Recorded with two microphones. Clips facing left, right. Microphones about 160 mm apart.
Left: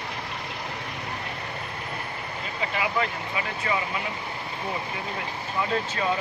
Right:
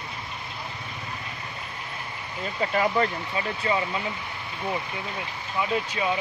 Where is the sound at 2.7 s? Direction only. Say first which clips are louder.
Right 4 dB; 40° right (ahead or behind).